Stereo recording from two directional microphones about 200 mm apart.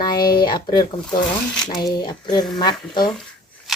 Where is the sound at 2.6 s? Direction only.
20° left (ahead or behind).